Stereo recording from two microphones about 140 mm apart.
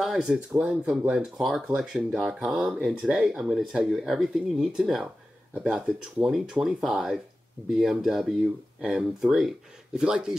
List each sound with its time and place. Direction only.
0.0 s speech: 5° right (ahead or behind)